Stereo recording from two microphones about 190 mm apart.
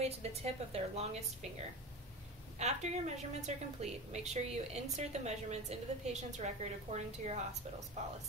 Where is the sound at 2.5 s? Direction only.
35° right (ahead or behind).